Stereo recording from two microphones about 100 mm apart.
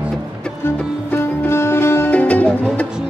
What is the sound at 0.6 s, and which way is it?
Music, 25° left (ahead or behind).